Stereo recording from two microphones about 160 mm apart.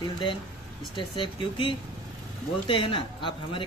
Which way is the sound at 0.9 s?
30° left (ahead or behind).